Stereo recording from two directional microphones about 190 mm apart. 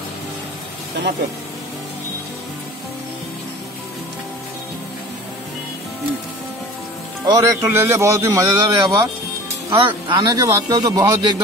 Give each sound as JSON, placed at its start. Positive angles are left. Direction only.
{"t": 7.2, "sound": "a man's voice", "side_deg": -15}